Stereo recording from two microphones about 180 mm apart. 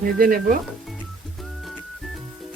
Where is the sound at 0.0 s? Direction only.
50° right (ahead or behind).